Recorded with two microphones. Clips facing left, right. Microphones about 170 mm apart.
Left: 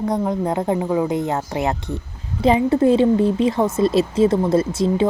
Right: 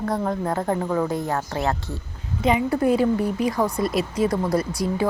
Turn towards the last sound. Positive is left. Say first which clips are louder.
# left 5 dB
turn(degrees=25)  # may be behind; listen again after turning